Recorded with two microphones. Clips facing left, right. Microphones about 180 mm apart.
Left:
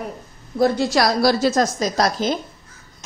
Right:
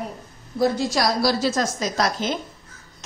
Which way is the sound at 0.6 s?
60° left (ahead or behind).